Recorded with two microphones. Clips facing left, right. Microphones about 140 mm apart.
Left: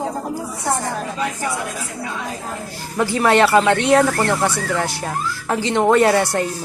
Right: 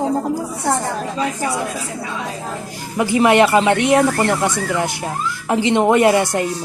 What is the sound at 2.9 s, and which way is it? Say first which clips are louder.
Speech: right 2 dB; 15° right (ahead or behind).